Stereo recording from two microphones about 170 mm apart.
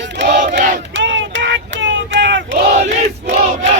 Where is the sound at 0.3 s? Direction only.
45° right (ahead or behind).